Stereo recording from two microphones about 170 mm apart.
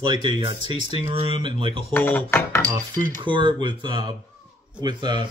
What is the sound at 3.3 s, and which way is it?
A man's voice, 30° right (ahead or behind).